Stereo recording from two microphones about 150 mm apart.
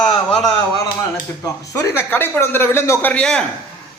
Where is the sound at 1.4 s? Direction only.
20° left (ahead or behind).